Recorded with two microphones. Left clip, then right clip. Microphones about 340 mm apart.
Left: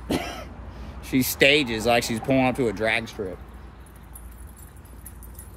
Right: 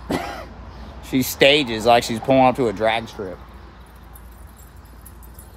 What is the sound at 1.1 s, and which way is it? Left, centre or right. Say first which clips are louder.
Speech: right 4 dB; centre.